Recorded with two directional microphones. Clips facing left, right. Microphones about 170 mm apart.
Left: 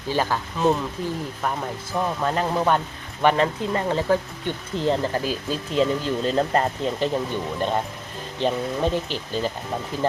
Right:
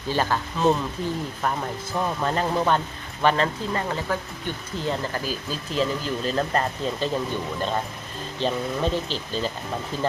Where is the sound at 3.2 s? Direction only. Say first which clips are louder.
Left 2 dB; 15° left (ahead or behind).